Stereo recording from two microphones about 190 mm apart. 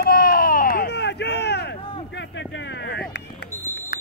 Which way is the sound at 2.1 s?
65° left (ahead or behind).